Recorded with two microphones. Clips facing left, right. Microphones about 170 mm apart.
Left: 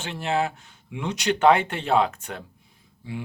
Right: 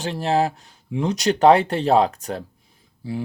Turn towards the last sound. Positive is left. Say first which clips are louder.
# right 6 dB
turn(degrees=-35)  # may be behind; listen again after turning